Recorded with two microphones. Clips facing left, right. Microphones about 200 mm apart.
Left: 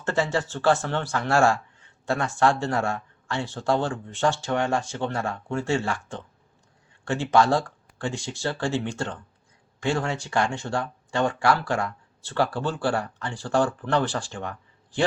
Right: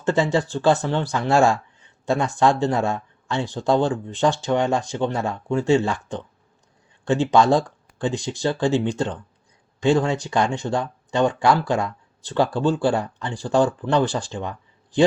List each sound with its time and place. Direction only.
0.0 s a man's voice: 15° right (ahead or behind)